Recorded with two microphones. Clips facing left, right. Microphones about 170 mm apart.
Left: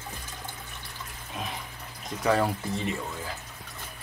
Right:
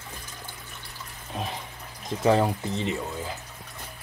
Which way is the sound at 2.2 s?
20° right (ahead or behind).